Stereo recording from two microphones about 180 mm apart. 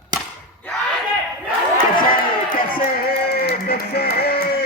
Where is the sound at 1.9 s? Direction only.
50° left (ahead or behind).